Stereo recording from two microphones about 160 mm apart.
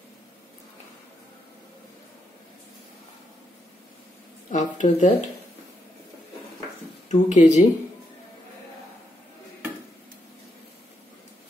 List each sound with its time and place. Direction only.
4.5 s speech: 50° left (ahead or behind)
7.1 s speech: 50° left (ahead or behind)